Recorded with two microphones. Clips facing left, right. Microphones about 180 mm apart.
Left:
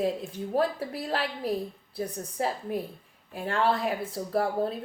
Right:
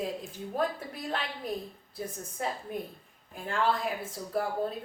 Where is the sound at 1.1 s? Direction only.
30° left (ahead or behind).